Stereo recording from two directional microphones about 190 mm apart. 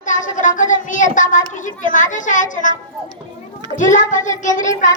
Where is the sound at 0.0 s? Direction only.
40° left (ahead or behind).